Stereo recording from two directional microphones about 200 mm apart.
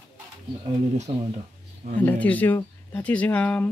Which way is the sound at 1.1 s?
25° right (ahead or behind).